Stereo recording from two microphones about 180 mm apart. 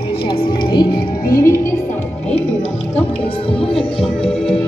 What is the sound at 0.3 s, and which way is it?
Speech, 25° left (ahead or behind).